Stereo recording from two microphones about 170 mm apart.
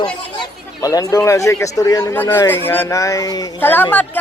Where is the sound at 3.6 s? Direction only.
10° left (ahead or behind).